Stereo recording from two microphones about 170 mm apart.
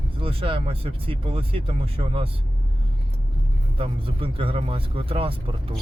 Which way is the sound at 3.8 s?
35° right (ahead or behind).